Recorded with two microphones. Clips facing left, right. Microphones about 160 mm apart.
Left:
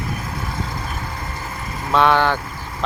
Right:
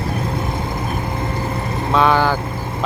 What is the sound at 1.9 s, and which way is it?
Speech, centre (ahead or behind).